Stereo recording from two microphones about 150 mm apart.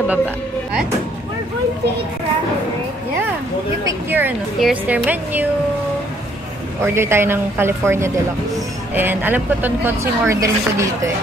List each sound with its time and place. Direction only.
3.8 s a sound: 15° right (ahead or behind)
4.6 s speech: 5° right (ahead or behind)
6.8 s speech: 15° right (ahead or behind)